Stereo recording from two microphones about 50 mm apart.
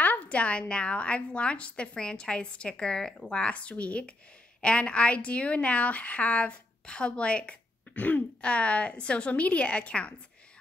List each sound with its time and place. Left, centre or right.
0.0 s a woman's voice: left